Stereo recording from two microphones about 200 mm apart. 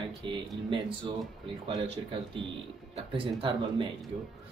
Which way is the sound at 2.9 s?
25° right (ahead or behind).